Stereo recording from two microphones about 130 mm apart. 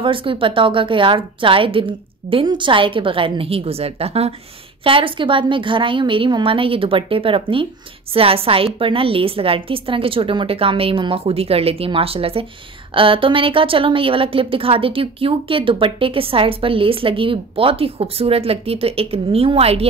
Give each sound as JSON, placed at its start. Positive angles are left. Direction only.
{"t": 0.0, "sound": "a woman's voice", "side_deg": -40}